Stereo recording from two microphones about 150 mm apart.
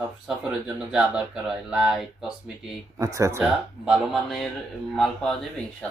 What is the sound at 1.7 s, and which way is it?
Speech, 5° right (ahead or behind).